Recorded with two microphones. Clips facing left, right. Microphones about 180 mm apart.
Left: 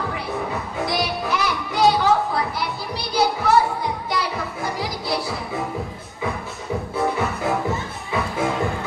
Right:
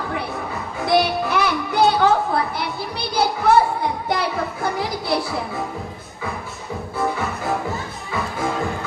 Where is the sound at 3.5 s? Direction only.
55° right (ahead or behind).